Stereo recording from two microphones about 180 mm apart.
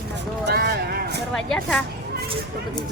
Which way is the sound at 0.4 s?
65° right (ahead or behind).